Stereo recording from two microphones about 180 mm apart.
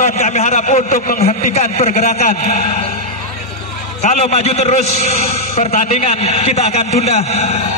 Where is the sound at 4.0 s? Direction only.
40° left (ahead or behind).